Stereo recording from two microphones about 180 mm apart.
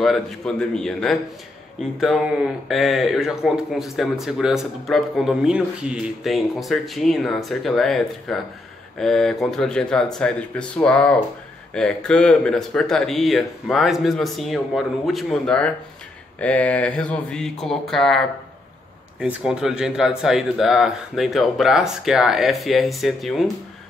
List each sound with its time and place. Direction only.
0.0 s speech: 5° left (ahead or behind)